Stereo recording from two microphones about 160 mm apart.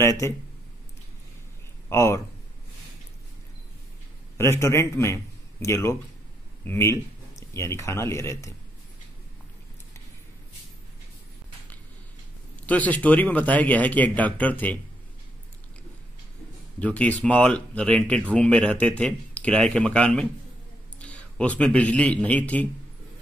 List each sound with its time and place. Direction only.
0.0 s speech: 15° left (ahead or behind)
1.9 s speech: 15° left (ahead or behind)
4.4 s a man's voice: 15° left (ahead or behind)
12.6 s speech: 10° left (ahead or behind)
16.8 s a man's voice: 10° left (ahead or behind)